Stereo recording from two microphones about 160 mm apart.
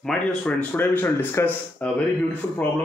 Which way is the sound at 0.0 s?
5° left (ahead or behind).